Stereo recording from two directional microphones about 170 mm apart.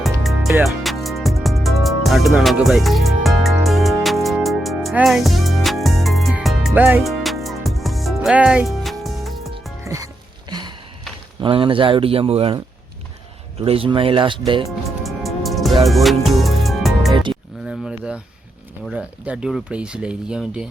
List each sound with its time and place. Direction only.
0.0 s music: centre (ahead or behind)
9.8 s music: 15° right (ahead or behind)
10.5 s a sound: 25° right (ahead or behind)
11.3 s speech: 30° right (ahead or behind)
15.0 s music: centre (ahead or behind)
17.6 s speech: 5° right (ahead or behind)